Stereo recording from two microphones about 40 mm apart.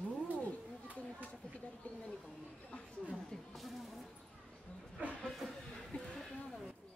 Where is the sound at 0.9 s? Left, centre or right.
Left.